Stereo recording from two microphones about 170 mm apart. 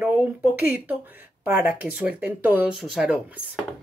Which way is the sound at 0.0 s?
10° right (ahead or behind).